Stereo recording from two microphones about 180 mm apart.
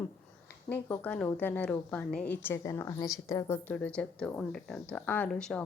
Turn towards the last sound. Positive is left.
turn(degrees=5)  # may be behind; listen again after turning